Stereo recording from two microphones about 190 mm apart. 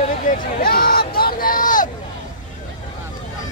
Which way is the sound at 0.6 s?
50° left (ahead or behind).